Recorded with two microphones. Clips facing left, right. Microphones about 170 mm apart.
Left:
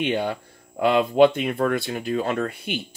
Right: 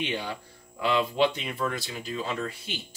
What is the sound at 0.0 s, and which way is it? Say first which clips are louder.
Speech: left 8 dB; 55° left (ahead or behind).